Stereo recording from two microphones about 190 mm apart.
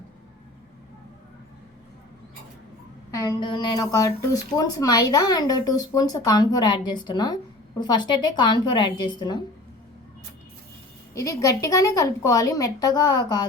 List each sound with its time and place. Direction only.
3.1 s speech: 20° left (ahead or behind)
11.1 s a woman's voice: 15° left (ahead or behind)